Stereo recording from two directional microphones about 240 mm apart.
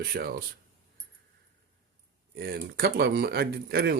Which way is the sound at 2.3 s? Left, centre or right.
Right.